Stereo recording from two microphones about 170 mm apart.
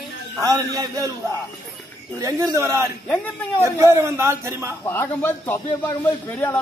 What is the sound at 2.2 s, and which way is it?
A man's voice, 15° right (ahead or behind).